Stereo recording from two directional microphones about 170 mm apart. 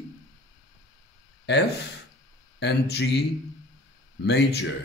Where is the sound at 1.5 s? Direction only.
80° left.